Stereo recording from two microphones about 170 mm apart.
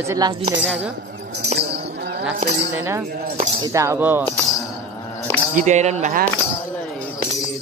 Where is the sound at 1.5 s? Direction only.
75° right (ahead or behind).